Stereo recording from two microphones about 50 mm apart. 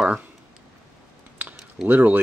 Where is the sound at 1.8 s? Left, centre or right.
Right.